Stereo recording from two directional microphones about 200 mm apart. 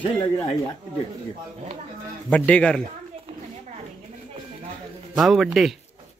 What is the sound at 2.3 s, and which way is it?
Speech, 5° left (ahead or behind).